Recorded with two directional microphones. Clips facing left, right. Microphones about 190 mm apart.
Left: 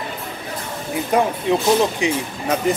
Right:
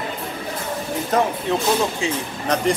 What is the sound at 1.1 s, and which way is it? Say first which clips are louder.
Speech: left 3 dB; 15° left (ahead or behind).